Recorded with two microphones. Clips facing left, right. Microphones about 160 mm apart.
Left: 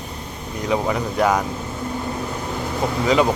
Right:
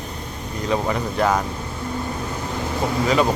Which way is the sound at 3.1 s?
15° left (ahead or behind).